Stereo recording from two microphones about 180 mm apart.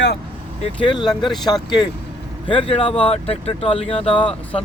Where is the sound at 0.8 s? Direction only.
25° left (ahead or behind).